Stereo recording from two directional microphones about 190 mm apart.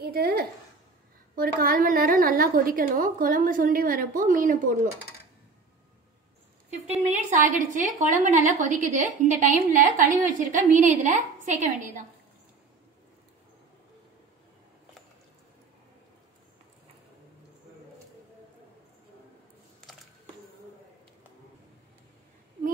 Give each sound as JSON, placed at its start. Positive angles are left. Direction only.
{"t": 0.0, "sound": "a sound", "side_deg": -55}
{"t": 1.3, "sound": "a woman's voice", "side_deg": -50}
{"t": 6.9, "sound": "a woman's voice", "side_deg": -40}